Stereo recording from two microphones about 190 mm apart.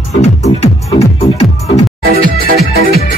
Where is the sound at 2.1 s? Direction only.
55° right (ahead or behind).